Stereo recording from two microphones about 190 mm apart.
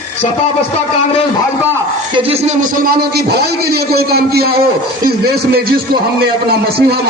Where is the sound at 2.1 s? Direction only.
30° right (ahead or behind).